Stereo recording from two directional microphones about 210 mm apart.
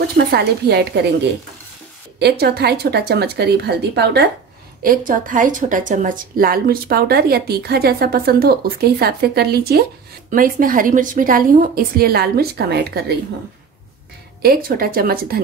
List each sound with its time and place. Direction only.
0.2 s a woman's voice: 50° right (ahead or behind)
2.1 s a woman's voice: 50° right (ahead or behind)
4.8 s a woman's voice: 40° right (ahead or behind)
14.4 s a woman's voice: 45° right (ahead or behind)